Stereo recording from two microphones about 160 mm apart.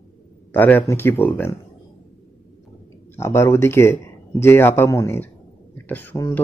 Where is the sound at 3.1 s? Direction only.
15° left (ahead or behind).